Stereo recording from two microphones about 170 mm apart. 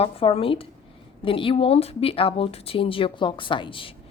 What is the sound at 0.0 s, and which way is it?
A woman's voice, 35° left (ahead or behind).